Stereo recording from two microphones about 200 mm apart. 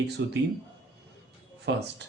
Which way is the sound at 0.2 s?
60° right (ahead or behind).